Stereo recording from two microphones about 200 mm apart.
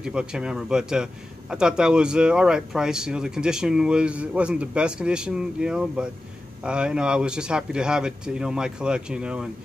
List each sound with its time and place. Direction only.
0.0 s speech: 5° right (ahead or behind)